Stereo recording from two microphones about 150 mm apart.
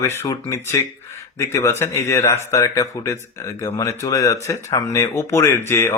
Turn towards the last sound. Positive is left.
turn(degrees=15)  # may be behind; listen again after turning